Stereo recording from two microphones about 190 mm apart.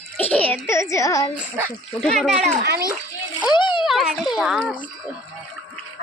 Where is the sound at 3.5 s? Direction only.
25° left (ahead or behind).